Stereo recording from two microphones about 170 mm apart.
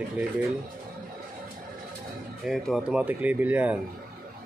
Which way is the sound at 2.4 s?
Centre (ahead or behind).